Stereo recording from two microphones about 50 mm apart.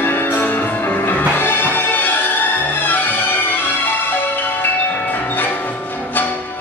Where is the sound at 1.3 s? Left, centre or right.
Left.